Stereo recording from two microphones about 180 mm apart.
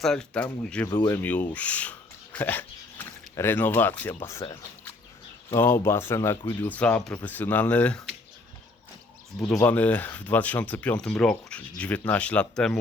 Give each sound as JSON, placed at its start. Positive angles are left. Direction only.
{"t": 0.0, "sound": "speech", "side_deg": 5}
{"t": 5.5, "sound": "speech", "side_deg": 15}
{"t": 9.6, "sound": "speech", "side_deg": 10}